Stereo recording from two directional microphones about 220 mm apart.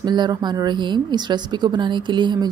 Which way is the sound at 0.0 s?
20° right (ahead or behind).